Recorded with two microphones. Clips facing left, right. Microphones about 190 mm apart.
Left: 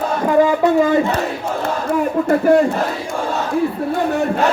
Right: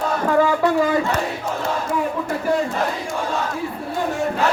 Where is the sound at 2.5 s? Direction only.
55° left (ahead or behind).